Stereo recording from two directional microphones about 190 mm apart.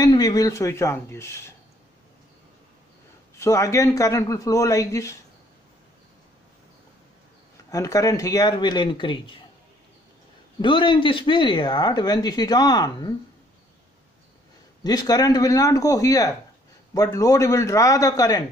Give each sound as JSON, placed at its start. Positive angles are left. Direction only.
{"t": 0.0, "sound": "speech", "side_deg": 20}
{"t": 3.3, "sound": "speech", "side_deg": 15}
{"t": 7.7, "sound": "speech", "side_deg": 15}
{"t": 10.6, "sound": "speech", "side_deg": 25}
{"t": 14.8, "sound": "speech", "side_deg": 20}